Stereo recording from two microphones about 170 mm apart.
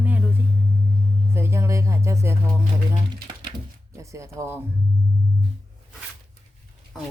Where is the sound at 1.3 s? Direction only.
15° right (ahead or behind).